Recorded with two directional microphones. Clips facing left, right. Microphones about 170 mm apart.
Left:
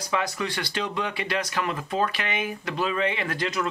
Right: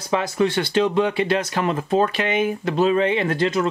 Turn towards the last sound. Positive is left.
turn(degrees=-30)  # may be behind; listen again after turning